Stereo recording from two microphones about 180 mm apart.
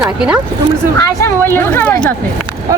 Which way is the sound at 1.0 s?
15° left (ahead or behind).